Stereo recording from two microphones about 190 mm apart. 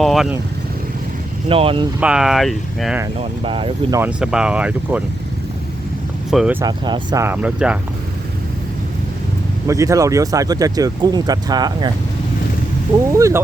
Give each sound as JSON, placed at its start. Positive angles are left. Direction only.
{"t": 0.0, "sound": "speech", "side_deg": 0}
{"t": 1.5, "sound": "speech", "side_deg": -30}
{"t": 2.0, "sound": "speech", "side_deg": -5}
{"t": 3.2, "sound": "speech", "side_deg": -30}
{"t": 4.0, "sound": "speech", "side_deg": -5}
{"t": 6.3, "sound": "speech", "side_deg": -5}
{"t": 6.6, "sound": "speech", "side_deg": -20}
{"t": 7.3, "sound": "speech", "side_deg": -5}
{"t": 9.6, "sound": "speech", "side_deg": -15}
{"t": 13.1, "sound": "speech", "side_deg": -15}